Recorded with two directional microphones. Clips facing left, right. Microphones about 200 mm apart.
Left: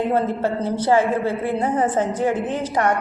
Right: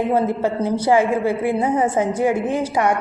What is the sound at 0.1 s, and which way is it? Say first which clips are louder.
A woman's voice: right 2 dB; 10° right (ahead or behind).